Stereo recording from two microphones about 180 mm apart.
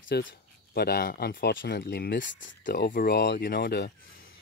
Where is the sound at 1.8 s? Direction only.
60° left (ahead or behind); by 2.5 s 90° left.